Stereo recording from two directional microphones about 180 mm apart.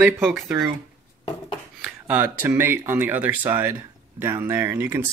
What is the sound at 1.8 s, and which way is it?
Speech, 10° right (ahead or behind).